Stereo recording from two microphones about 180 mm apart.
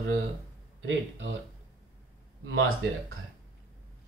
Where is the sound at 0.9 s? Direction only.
90° right.